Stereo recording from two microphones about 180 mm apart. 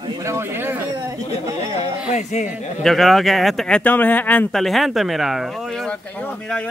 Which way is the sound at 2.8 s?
Centre (ahead or behind).